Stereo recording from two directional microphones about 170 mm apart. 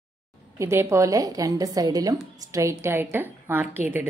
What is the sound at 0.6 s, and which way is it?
A woman's voice, 15° right (ahead or behind).